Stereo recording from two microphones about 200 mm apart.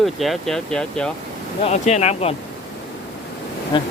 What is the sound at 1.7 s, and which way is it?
Speech, 35° left (ahead or behind).